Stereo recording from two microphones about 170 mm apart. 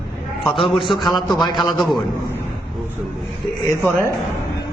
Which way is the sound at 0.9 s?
25° left (ahead or behind).